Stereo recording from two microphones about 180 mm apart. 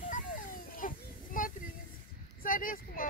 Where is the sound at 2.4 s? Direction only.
50° left (ahead or behind).